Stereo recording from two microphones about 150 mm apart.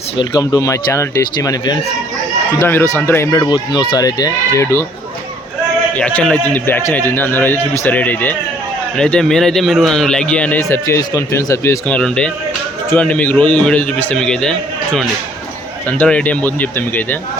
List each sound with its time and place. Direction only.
0.2 s a man's voice: 25° left (ahead or behind)
6.0 s a man's voice: 10° left (ahead or behind)
10.6 s speech: 20° left (ahead or behind)
11.9 s a man's voice: 5° left (ahead or behind)
15.9 s a man's voice: 10° left (ahead or behind)